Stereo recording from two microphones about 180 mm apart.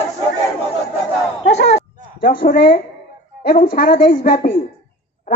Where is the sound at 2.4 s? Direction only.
55° left (ahead or behind).